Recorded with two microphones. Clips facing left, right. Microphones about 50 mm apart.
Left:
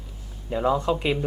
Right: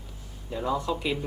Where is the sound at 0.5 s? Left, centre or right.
Left.